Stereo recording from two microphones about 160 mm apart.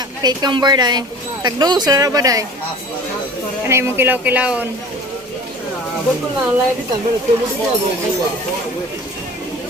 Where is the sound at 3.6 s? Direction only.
15° right (ahead or behind).